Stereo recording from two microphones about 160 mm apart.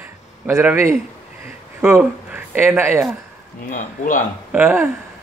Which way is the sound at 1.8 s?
10° right (ahead or behind).